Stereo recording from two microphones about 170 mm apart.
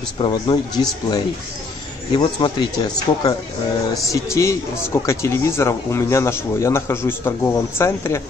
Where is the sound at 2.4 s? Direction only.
35° left (ahead or behind).